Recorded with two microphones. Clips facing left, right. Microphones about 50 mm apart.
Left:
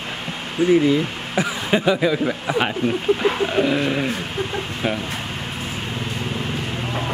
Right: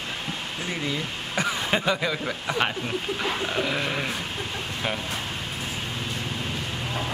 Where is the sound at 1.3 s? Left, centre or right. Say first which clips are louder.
Left 5 dB; centre.